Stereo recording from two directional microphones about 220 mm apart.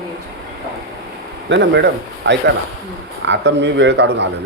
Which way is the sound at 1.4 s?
55° right (ahead or behind).